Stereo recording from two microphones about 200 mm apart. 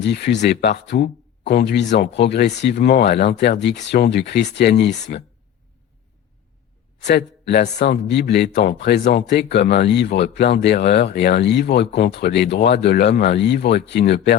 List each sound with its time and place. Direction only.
0.0 s speech: 60° left (ahead or behind)
7.0 s speech: 55° left (ahead or behind)